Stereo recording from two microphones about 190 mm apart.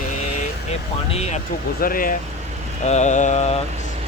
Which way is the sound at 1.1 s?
35° left (ahead or behind).